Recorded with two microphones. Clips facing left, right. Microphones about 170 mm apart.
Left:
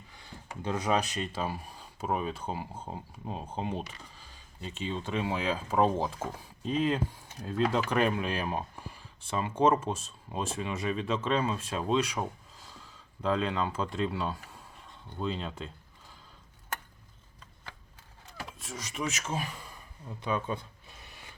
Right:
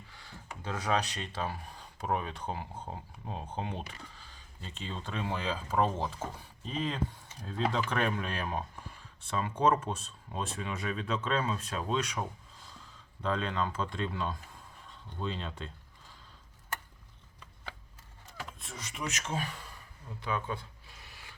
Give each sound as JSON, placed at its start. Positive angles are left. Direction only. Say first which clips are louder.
{"t": 0.2, "sound": "speech", "louder": "left 5 dB", "side_deg": 15}
{"t": 13.2, "sound": "speech", "louder": "left 3 dB", "side_deg": 5}
{"t": 18.6, "sound": "speech", "louder": "left 5 dB", "side_deg": 5}
{"t": 20.1, "sound": "a sound", "louder": "left 3 dB", "side_deg": 20}